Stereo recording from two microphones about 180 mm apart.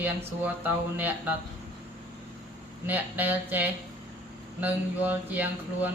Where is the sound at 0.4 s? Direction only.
10° right (ahead or behind).